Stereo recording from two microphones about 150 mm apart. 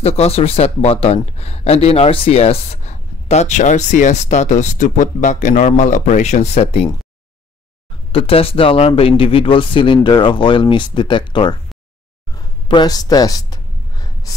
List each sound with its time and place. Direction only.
0.0 s speech: 45° left (ahead or behind)
8.1 s speech: 40° left (ahead or behind)
12.6 s a sound: 30° left (ahead or behind)